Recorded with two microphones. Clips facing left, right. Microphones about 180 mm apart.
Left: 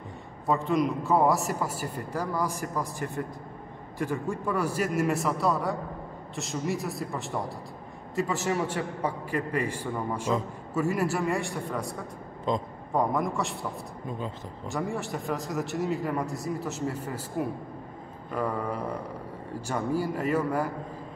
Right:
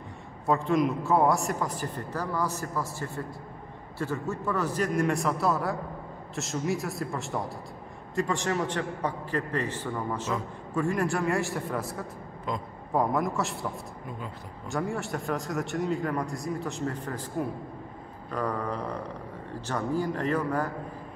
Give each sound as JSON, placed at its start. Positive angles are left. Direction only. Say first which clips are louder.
{"t": 0.5, "sound": "a man's voice", "louder": "right 1 dB", "side_deg": 0}
{"t": 12.5, "sound": "a man's voice", "louder": "left 5 dB", "side_deg": 25}
{"t": 12.9, "sound": "a man's voice", "louder": "even", "side_deg": 0}
{"t": 14.7, "sound": "a man's voice", "louder": "right 1 dB", "side_deg": 0}